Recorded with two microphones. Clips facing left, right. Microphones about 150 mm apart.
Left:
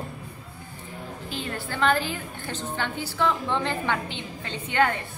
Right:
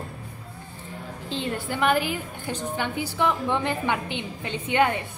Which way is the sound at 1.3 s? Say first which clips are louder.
Right 5 dB; 20° right (ahead or behind).